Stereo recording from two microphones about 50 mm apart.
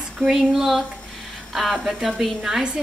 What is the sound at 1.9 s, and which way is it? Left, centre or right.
Speech, centre.